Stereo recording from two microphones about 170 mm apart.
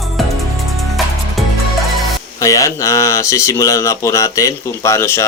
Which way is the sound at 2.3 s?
20° left (ahead or behind).